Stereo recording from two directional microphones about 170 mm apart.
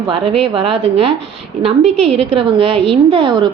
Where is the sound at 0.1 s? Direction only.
30° right (ahead or behind).